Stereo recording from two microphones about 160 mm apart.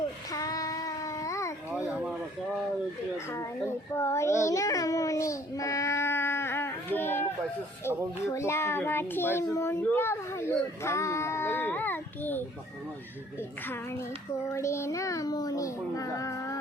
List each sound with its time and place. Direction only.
0.3 s child singing: 20° left (ahead or behind)
3.9 s child singing: 15° left (ahead or behind)
7.9 s a child's voice: 20° left (ahead or behind)
14.5 s a child's voice: 15° left (ahead or behind)